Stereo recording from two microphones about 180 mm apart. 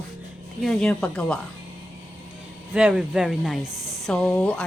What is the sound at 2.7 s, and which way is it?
A woman's voice, 5° right (ahead or behind).